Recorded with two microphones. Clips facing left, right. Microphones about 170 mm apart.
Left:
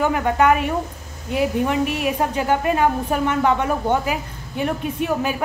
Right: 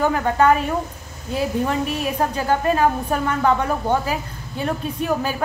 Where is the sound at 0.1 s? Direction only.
15° left (ahead or behind).